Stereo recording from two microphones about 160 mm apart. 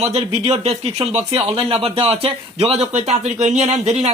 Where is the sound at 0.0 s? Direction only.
45° right (ahead or behind).